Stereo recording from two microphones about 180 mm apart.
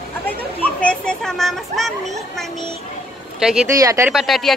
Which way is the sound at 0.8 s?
5° left (ahead or behind).